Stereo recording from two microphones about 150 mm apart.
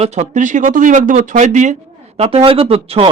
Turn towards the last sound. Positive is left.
turn(degrees=-40)  # may be behind; listen again after turning